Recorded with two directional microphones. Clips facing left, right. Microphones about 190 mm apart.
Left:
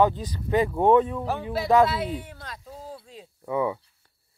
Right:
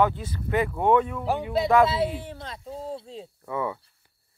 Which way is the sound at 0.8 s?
30° left (ahead or behind).